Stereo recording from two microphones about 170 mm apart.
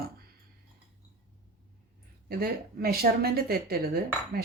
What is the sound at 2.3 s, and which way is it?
Speech, 65° right (ahead or behind).